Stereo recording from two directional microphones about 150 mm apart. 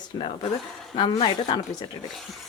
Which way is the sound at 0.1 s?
30° left (ahead or behind).